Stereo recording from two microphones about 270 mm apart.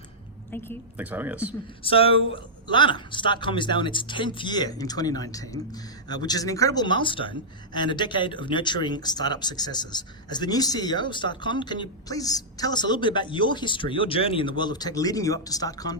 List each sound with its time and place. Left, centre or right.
0.9 s speech: centre
1.8 s a man's voice: left